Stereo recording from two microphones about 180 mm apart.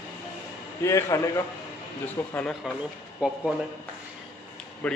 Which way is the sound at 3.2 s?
5° right (ahead or behind).